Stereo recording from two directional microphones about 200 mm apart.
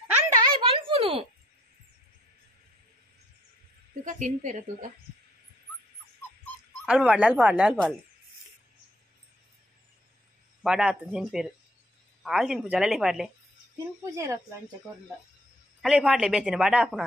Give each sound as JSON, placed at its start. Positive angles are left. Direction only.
{"t": 0.5, "sound": "a sound", "side_deg": -25}
{"t": 4.0, "sound": "a woman's voice", "side_deg": -40}
{"t": 6.9, "sound": "a woman's voice", "side_deg": -5}
{"t": 10.6, "sound": "a woman's voice", "side_deg": -5}
{"t": 14.0, "sound": "speech", "side_deg": -15}
{"t": 15.8, "sound": "a woman's voice", "side_deg": -5}